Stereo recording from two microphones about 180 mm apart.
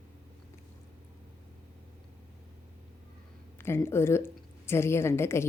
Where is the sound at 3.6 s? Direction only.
15° left (ahead or behind).